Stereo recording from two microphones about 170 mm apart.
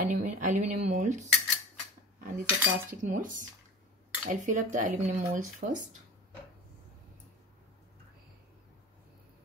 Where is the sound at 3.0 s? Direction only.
50° right (ahead or behind).